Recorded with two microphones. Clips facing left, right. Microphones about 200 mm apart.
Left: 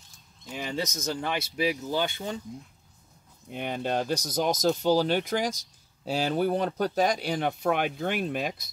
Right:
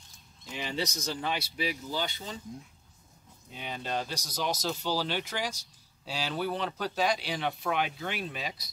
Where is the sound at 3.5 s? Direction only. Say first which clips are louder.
Left 6 dB; 55° left (ahead or behind).